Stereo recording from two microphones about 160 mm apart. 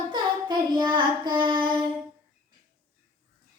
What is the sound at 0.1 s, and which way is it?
Child singing, 30° right (ahead or behind).